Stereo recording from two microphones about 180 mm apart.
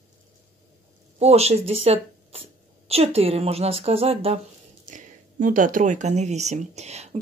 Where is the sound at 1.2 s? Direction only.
35° right (ahead or behind).